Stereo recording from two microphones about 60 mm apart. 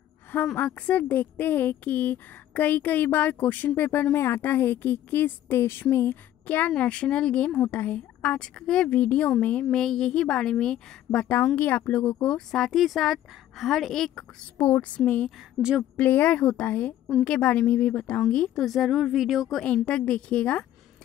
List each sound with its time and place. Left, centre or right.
0.6 s speech: left
5.5 s speech: left
6.4 s a woman's voice: left
6.7 s a woman's voice: centre
8.5 s a woman's voice: centre
8.8 s a woman's voice: left
9.8 s a woman's voice: centre
11.5 s a woman's voice: left
12.4 s a woman's voice: centre
14.6 s a woman's voice: left
15.6 s a woman's voice: right
16.0 s a woman's voice: left
18.6 s a woman's voice: centre
19.9 s a woman's voice: centre